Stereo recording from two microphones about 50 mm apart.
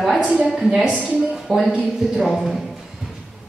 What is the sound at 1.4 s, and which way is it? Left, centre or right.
A man's voice, centre.